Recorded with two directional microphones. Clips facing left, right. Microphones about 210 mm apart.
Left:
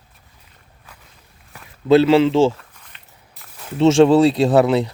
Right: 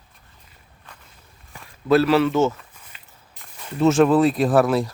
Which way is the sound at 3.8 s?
30° left (ahead or behind).